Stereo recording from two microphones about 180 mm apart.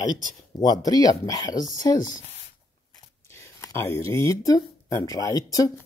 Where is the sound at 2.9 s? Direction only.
15° left (ahead or behind).